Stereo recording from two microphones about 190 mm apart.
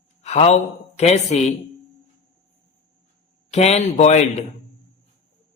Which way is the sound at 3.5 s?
35° left (ahead or behind).